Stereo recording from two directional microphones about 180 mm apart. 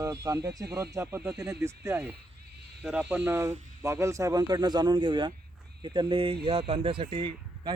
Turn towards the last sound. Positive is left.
turn(degrees=-25)  # may be behind; listen again after turning